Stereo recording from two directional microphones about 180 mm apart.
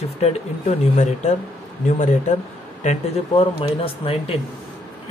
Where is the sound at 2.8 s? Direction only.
30° left (ahead or behind).